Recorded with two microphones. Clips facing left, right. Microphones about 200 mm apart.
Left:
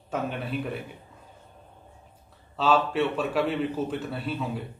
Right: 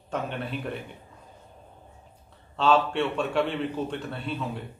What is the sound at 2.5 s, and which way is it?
A man's voice, 5° left (ahead or behind).